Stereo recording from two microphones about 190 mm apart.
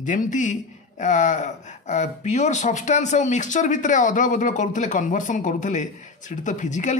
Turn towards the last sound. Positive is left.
turn(degrees=40)  # may be behind; listen again after turning